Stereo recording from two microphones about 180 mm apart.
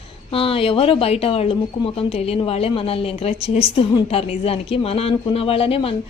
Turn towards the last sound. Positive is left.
turn(degrees=30)  # may be behind; listen again after turning